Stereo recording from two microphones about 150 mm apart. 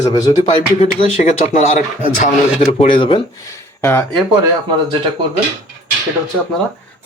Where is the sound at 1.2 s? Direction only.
55° left (ahead or behind).